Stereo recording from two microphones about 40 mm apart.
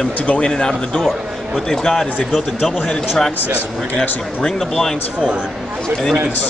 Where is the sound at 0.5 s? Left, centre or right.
Centre.